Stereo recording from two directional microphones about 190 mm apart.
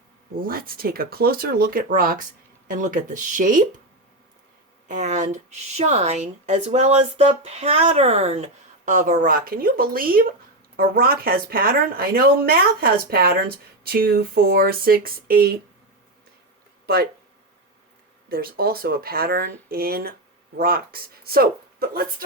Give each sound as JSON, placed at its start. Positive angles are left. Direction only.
{"t": 0.4, "sound": "speech", "side_deg": -50}
{"t": 4.9, "sound": "speech", "side_deg": -40}
{"t": 16.8, "sound": "speech", "side_deg": -55}
{"t": 18.3, "sound": "speech", "side_deg": -50}